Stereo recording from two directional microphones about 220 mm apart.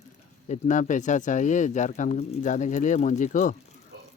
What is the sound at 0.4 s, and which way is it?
Speech, 30° left (ahead or behind).